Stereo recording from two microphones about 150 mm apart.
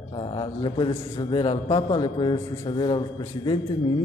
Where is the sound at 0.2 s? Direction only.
35° left (ahead or behind).